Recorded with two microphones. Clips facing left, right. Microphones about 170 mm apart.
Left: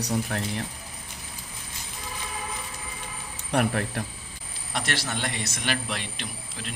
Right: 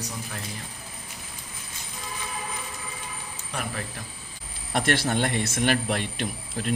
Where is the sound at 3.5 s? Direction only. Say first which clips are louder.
Left 9 dB; 65° left (ahead or behind).